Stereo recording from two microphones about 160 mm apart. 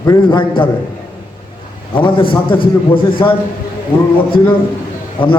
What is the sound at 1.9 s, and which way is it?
A man's voice, 30° left (ahead or behind).